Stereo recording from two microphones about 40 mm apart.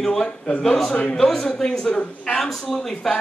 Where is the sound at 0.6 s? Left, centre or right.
Centre.